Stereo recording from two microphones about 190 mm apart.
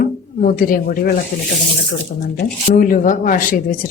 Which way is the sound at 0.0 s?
45° left (ahead or behind).